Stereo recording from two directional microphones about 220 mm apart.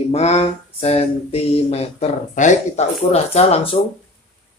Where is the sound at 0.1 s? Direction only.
30° left (ahead or behind).